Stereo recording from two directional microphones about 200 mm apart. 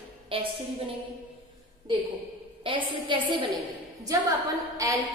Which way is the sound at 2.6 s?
25° right (ahead or behind).